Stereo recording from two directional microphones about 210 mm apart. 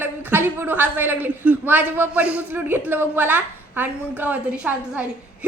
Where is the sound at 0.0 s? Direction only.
10° right (ahead or behind).